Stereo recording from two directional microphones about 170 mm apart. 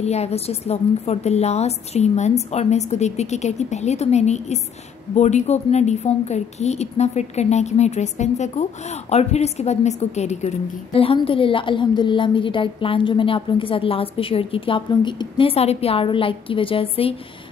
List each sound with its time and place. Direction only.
0.0 s a woman's voice: 40° left (ahead or behind)